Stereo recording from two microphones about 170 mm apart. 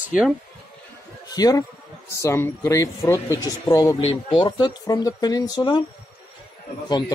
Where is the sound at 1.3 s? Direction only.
25° left (ahead or behind).